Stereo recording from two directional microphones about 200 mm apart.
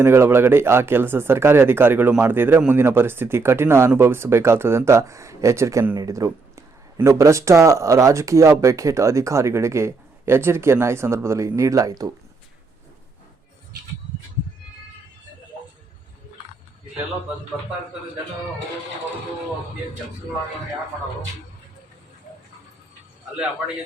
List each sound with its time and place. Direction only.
0.0 s speech: 10° right (ahead or behind)